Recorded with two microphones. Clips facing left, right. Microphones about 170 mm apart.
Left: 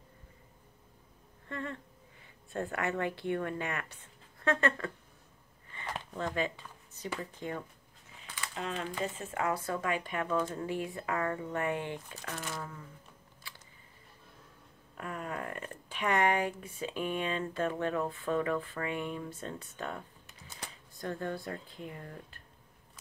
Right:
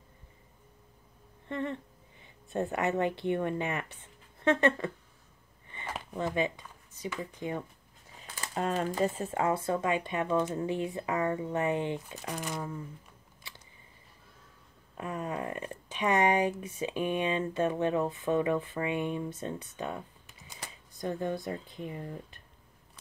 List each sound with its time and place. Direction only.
1.5 s speech: 20° right (ahead or behind)
6.1 s speech: 15° right (ahead or behind)
8.4 s speech: 40° right (ahead or behind)
9.3 s speech: 25° right (ahead or behind)
15.0 s speech: 20° right (ahead or behind)